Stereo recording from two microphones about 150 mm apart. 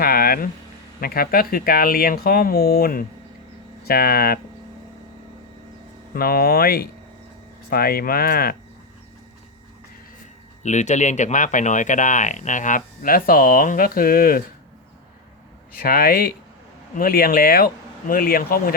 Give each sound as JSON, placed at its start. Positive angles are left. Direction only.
{"t": 0.0, "sound": "speech", "side_deg": 85}
{"t": 6.1, "sound": "speech", "side_deg": 85}
{"t": 10.6, "sound": "speech", "side_deg": 50}
{"t": 15.8, "sound": "speech", "side_deg": 85}
{"t": 16.9, "sound": "speech", "side_deg": 75}